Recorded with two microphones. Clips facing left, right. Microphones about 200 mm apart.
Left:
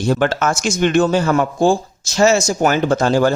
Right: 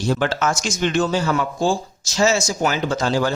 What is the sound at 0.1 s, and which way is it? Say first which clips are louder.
Speech: left 4 dB; 55° left (ahead or behind).